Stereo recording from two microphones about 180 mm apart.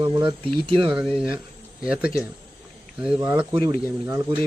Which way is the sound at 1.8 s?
5° right (ahead or behind).